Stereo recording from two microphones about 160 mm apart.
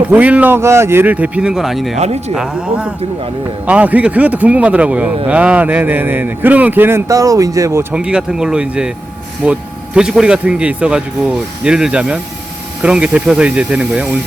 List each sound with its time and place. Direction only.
0.1 s a man's voice: 10° right (ahead or behind)
2.0 s speech: 45° right (ahead or behind)
2.3 s a man's voice: 5° right (ahead or behind)
7.9 s a man's voice: 5° right (ahead or behind)